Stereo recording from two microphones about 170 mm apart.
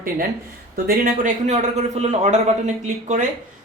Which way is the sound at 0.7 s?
55° right (ahead or behind).